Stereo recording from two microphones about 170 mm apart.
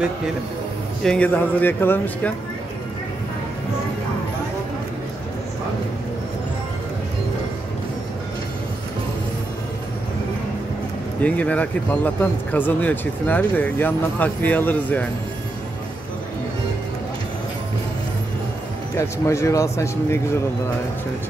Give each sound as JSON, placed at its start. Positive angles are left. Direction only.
{"t": 1.0, "sound": "speech", "side_deg": 5}
{"t": 11.2, "sound": "speech", "side_deg": 10}
{"t": 18.9, "sound": "speech", "side_deg": 15}